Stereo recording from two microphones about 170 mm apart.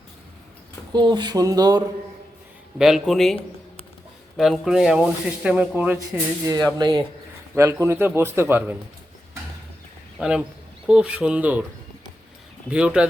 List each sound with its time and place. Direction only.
0.9 s speech: 25° right (ahead or behind)
2.7 s speech: centre (ahead or behind)
4.4 s speech: centre (ahead or behind)
6.4 s a man's voice: 20° right (ahead or behind)
10.2 s a man's voice: 5° right (ahead or behind)
12.7 s speech: 5° right (ahead or behind)